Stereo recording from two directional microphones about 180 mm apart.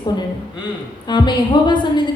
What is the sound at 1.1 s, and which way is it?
Speech, 25° left (ahead or behind).